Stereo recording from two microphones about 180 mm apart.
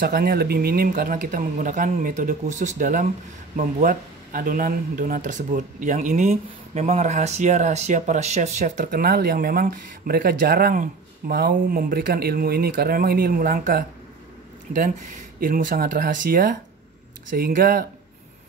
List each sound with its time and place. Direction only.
0.0 s speech: 55° right (ahead or behind)
15.4 s speech: 50° right (ahead or behind)